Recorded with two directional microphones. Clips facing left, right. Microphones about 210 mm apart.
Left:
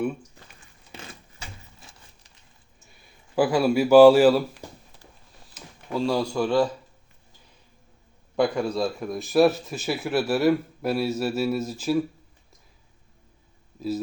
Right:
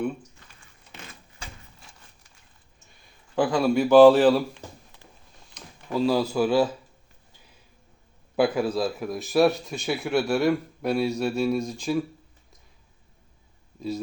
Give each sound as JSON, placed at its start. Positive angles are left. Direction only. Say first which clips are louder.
{"t": 3.3, "sound": "speech", "louder": "left 1 dB", "side_deg": 10}
{"t": 5.5, "sound": "speech", "louder": "right 2 dB", "side_deg": 0}
{"t": 8.4, "sound": "speech", "louder": "right 1 dB", "side_deg": -5}